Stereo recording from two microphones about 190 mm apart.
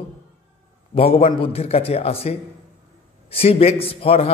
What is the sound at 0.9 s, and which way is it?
A man's voice, 30° left (ahead or behind).